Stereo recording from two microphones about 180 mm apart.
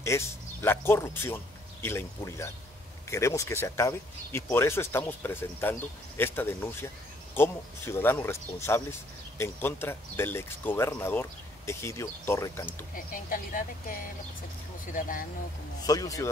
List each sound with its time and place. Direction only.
0.0 s speech: 15° left (ahead or behind)
12.9 s speech: 50° left (ahead or behind)
15.8 s speech: 20° left (ahead or behind)